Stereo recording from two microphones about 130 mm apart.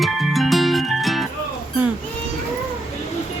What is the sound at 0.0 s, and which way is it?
Music, centre (ahead or behind).